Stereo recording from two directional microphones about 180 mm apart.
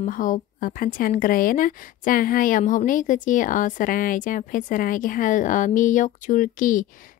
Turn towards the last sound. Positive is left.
turn(degrees=50)  # may be behind; listen again after turning